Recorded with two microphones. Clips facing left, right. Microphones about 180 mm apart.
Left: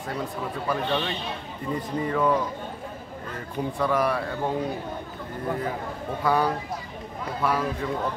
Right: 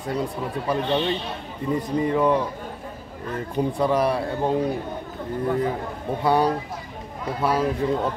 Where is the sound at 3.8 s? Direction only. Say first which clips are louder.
Right 2 dB; 25° right (ahead or behind).